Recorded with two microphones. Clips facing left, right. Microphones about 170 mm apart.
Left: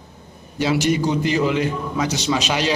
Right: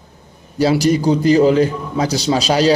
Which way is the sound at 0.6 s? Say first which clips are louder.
Right 5 dB; 35° right (ahead or behind).